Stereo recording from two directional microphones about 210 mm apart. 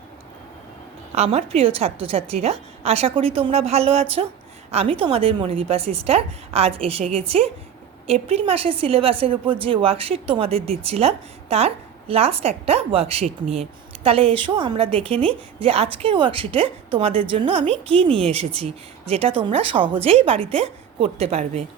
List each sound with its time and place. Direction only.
1.1 s a woman's voice: 30° right (ahead or behind)